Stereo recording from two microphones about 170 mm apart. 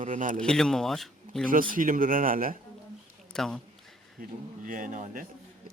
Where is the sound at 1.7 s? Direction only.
55° right (ahead or behind).